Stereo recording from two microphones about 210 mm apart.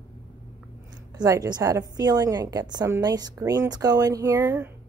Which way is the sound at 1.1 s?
15° right (ahead or behind).